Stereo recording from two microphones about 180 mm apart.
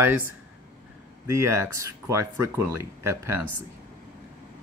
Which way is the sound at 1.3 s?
15° right (ahead or behind).